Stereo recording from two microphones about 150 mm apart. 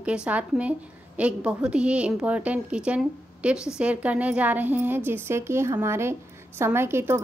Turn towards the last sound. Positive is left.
turn(degrees=-15)  # may be behind; listen again after turning